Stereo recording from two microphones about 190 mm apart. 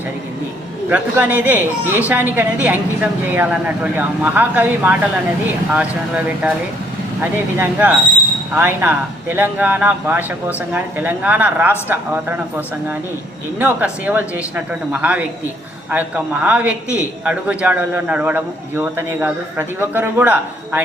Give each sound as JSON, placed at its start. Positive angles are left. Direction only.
{"t": 0.9, "sound": "a man's voice", "side_deg": -10}